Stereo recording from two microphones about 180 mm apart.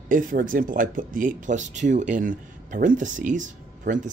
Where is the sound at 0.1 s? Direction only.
50° right (ahead or behind).